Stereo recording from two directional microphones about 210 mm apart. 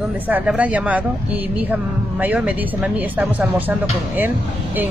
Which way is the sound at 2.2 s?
5° right (ahead or behind).